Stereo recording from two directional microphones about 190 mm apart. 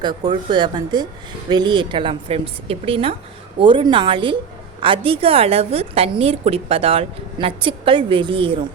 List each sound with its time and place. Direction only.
0.0 s a woman's voice: 20° right (ahead or behind)